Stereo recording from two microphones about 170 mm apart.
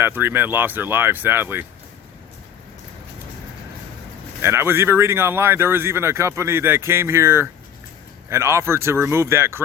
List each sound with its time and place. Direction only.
0.0 s speech: 10° right (ahead or behind)
4.4 s speech: 15° right (ahead or behind)